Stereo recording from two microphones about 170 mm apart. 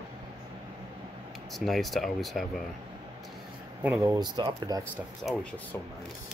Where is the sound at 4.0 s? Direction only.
20° right (ahead or behind).